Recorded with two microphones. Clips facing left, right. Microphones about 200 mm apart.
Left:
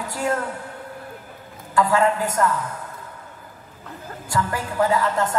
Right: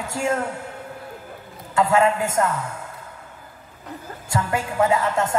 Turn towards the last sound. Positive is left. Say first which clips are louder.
# even
turn(degrees=-25)  # may be behind; listen again after turning